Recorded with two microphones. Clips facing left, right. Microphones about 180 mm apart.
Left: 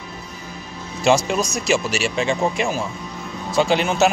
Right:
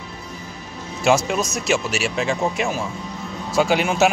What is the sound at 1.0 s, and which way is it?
Speech, 5° right (ahead or behind).